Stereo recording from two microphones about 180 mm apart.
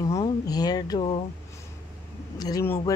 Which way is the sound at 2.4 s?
20° left (ahead or behind).